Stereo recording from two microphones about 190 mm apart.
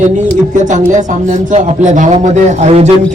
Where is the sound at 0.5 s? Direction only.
40° right (ahead or behind).